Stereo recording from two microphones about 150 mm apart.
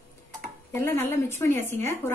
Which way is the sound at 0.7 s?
15° left (ahead or behind).